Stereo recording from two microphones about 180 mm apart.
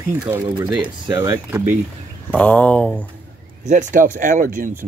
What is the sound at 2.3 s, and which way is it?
Speech, 5° left (ahead or behind).